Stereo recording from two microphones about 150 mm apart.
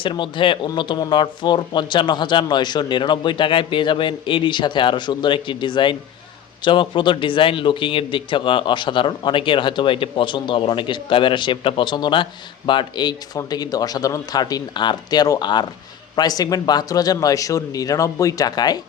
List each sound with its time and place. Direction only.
0.0 s a man's voice: 35° left (ahead or behind)